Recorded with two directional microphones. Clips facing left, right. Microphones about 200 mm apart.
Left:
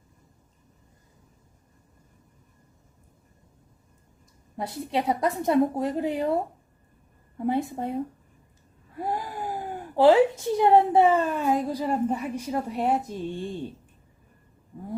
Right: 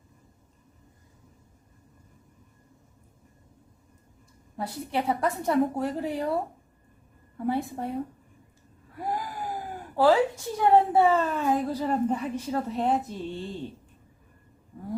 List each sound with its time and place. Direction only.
4.5 s a woman's voice: 20° left (ahead or behind)
7.3 s a woman's voice: 20° left (ahead or behind)
9.0 s gasp: 25° left (ahead or behind)
9.9 s speech: 20° left (ahead or behind)